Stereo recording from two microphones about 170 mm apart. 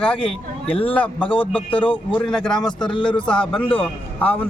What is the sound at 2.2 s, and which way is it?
A man's voice, 5° left (ahead or behind).